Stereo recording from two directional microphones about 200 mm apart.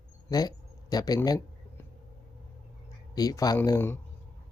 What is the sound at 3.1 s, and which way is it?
Speech, 20° left (ahead or behind).